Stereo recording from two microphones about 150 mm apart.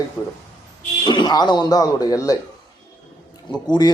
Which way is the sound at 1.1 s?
30° left (ahead or behind).